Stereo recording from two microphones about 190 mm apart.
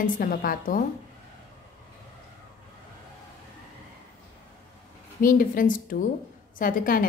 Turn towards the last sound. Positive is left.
turn(degrees=50)  # may be behind; listen again after turning